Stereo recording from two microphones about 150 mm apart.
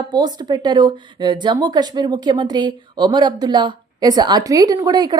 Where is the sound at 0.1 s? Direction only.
30° right (ahead or behind).